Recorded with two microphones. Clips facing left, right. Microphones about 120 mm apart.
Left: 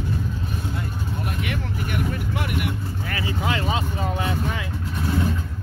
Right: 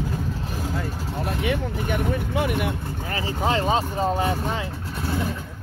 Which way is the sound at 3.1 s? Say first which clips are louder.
Right 3 dB; 35° right (ahead or behind).